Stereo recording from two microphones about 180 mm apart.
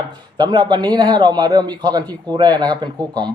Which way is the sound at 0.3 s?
25° right (ahead or behind).